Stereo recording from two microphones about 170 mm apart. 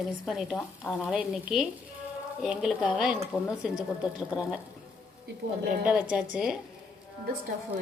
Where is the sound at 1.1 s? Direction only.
Centre (ahead or behind).